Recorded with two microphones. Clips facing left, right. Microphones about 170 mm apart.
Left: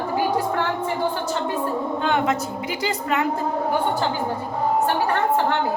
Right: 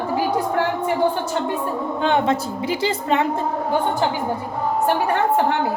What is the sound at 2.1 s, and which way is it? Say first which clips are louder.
A woman's voice: right 3 dB; 30° right (ahead or behind).